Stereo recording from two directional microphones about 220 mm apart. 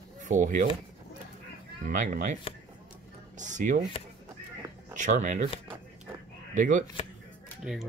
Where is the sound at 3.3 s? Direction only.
35° right (ahead or behind).